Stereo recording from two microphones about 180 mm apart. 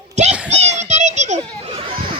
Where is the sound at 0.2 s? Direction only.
40° right (ahead or behind).